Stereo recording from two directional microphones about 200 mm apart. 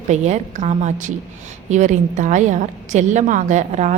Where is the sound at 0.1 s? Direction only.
35° right (ahead or behind).